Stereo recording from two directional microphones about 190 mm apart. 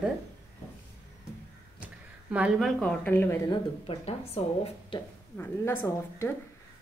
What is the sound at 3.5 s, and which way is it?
Speech, 30° left (ahead or behind).